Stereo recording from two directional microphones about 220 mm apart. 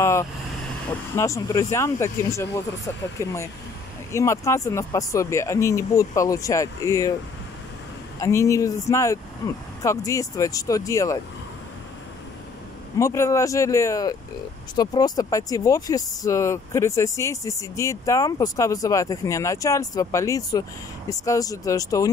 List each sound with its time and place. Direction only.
0.0 s vehicle: 15° left (ahead or behind)
1.1 s speech: 15° left (ahead or behind)
8.2 s speech: 15° left (ahead or behind)
13.0 s speech: 15° left (ahead or behind)